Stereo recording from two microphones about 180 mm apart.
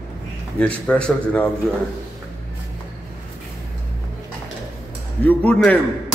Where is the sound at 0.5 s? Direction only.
5° left (ahead or behind).